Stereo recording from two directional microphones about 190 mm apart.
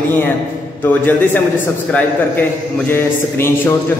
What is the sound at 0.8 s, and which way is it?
A man's voice, 10° left (ahead or behind).